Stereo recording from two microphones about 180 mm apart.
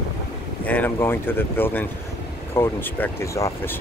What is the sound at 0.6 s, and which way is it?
Speech, 10° left (ahead or behind).